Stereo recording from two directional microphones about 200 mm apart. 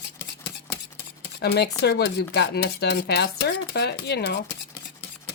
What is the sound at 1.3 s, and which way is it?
Speech, 55° left (ahead or behind).